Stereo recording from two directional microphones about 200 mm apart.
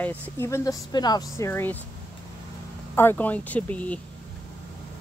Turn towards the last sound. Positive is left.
turn(degrees=5)  # may be behind; listen again after turning